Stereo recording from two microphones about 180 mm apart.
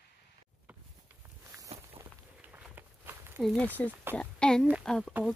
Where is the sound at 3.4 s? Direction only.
5° left (ahead or behind).